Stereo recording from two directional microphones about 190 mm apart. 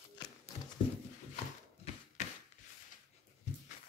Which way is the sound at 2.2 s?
35° left (ahead or behind).